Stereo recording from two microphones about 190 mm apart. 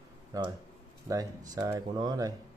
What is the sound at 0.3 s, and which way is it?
Speech, 15° right (ahead or behind).